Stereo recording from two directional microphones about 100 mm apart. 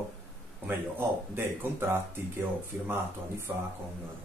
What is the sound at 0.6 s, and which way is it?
Speech, 20° right (ahead or behind).